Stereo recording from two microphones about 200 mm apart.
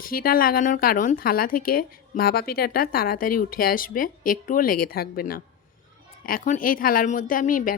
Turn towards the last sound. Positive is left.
turn(degrees=45)  # may be behind; listen again after turning